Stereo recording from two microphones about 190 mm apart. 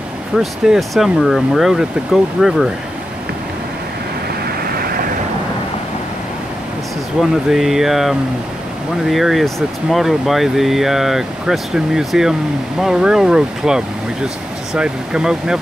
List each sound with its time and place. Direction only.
0.4 s speech: centre (ahead or behind)
4.5 s vehicle: 55° right (ahead or behind)
7.2 s speech: centre (ahead or behind)